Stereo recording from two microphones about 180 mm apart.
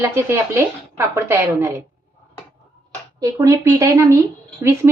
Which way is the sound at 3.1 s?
20° right (ahead or behind).